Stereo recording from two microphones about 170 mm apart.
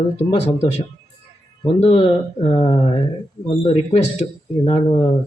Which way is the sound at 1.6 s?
35° left (ahead or behind).